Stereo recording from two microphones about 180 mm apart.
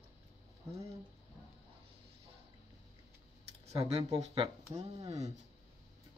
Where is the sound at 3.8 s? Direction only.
20° right (ahead or behind).